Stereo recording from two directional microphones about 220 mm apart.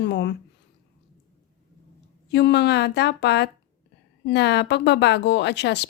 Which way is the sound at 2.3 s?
50° left (ahead or behind).